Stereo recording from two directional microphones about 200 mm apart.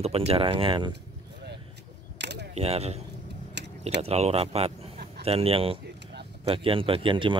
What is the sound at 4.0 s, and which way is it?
Speech, 30° right (ahead or behind).